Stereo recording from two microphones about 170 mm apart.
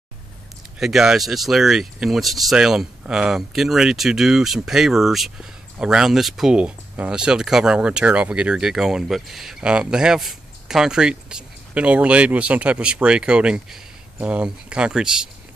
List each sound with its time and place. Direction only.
0.7 s speech: 5° right (ahead or behind)